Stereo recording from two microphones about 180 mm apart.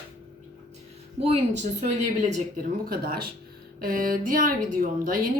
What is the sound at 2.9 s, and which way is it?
A woman's voice, 55° right (ahead or behind).